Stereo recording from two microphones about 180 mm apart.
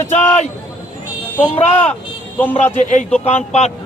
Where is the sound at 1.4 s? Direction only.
35° left (ahead or behind).